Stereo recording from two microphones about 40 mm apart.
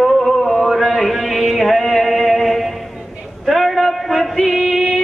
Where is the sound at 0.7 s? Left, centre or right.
Centre.